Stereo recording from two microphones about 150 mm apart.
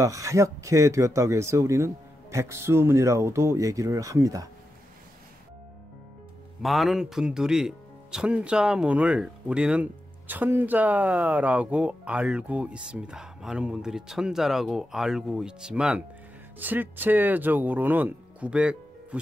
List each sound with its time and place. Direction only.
0.0 s speech: 20° right (ahead or behind)
6.6 s speech: centre (ahead or behind)